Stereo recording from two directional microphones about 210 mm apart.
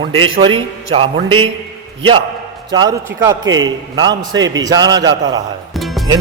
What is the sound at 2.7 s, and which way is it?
A man's voice, 20° right (ahead or behind).